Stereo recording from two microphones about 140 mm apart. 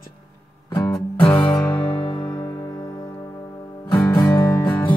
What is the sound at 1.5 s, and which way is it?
Music, 20° left (ahead or behind).